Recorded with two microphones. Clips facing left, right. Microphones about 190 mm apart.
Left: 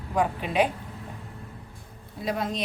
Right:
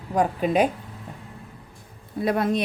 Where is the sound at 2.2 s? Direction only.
60° right (ahead or behind).